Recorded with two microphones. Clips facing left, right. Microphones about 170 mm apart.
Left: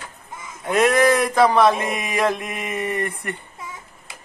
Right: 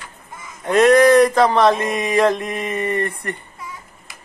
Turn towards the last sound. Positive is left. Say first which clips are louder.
# right 3 dB
turn(degrees=10)  # may be behind; listen again after turning